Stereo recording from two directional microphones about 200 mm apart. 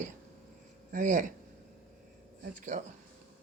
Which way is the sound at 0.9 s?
40° right (ahead or behind).